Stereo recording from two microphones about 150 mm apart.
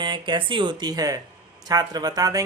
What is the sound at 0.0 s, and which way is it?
Speech, 30° right (ahead or behind).